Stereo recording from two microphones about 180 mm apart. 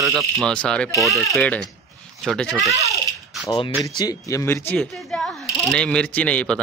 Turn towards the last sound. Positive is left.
turn(degrees=5)  # may be behind; listen again after turning